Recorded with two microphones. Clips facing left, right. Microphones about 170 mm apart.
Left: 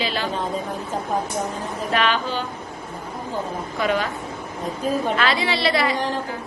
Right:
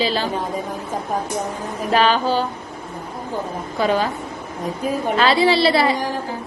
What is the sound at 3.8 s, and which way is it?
Speech, 30° right (ahead or behind).